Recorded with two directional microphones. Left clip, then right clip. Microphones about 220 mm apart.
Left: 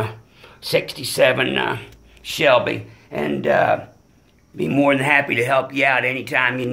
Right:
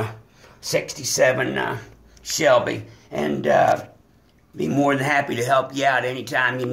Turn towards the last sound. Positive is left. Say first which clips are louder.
# left 2 dB
turn(degrees=15)  # may be behind; listen again after turning